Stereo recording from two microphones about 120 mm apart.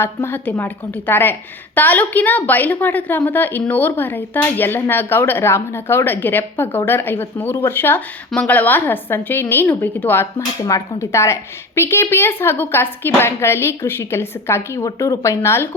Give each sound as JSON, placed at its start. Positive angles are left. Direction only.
{"t": 0.0, "sound": "a woman's voice", "side_deg": 20}